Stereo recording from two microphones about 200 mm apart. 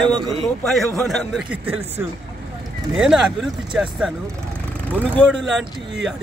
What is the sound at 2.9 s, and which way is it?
Speech, centre (ahead or behind).